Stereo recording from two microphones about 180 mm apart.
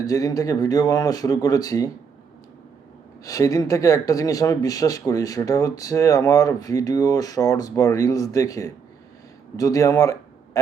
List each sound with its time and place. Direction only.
0.0 s speech: 20° left (ahead or behind)
3.2 s speech: 20° left (ahead or behind)